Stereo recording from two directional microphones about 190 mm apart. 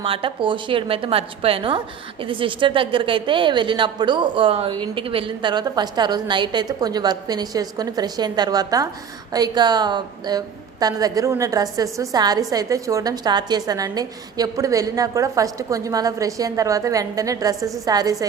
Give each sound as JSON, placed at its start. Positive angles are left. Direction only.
{"t": 0.0, "sound": "a woman's voice", "side_deg": -30}